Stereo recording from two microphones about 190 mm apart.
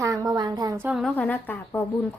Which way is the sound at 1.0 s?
10° left (ahead or behind).